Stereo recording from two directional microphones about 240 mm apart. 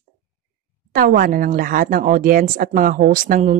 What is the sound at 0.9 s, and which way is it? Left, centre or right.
Speech, right.